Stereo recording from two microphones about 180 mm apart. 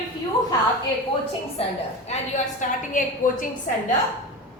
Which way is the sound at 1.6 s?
35° left (ahead or behind).